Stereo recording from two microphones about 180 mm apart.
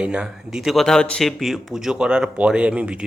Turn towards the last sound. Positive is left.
turn(degrees=-5)  # may be behind; listen again after turning